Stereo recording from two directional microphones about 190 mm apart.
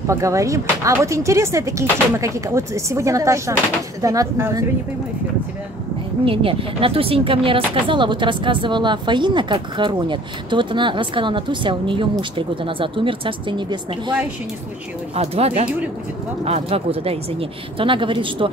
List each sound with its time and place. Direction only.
0.0 s speech: 15° right (ahead or behind)
6.2 s speech: 30° right (ahead or behind)
15.1 s speech: 30° right (ahead or behind)